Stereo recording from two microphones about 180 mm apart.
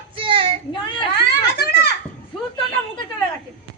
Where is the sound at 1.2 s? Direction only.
65° left (ahead or behind).